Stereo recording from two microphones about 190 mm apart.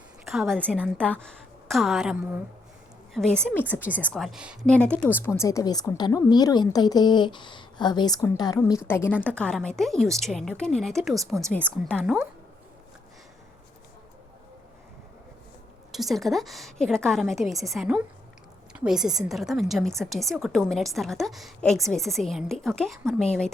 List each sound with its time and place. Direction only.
0.3 s a woman's voice: centre (ahead or behind)
15.9 s a woman's voice: centre (ahead or behind)